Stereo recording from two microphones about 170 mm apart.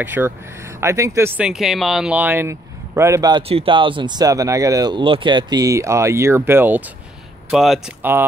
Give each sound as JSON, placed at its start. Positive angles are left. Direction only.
{"t": 0.0, "sound": "speech", "side_deg": -10}
{"t": 7.5, "sound": "speech", "side_deg": 0}
{"t": 8.0, "sound": "speech", "side_deg": -10}